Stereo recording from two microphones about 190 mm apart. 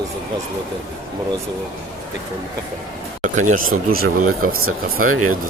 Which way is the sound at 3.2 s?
40° right (ahead or behind).